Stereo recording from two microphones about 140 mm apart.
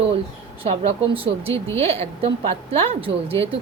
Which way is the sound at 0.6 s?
40° right (ahead or behind).